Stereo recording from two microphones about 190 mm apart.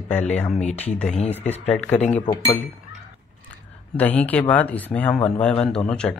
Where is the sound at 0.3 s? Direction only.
5° left (ahead or behind).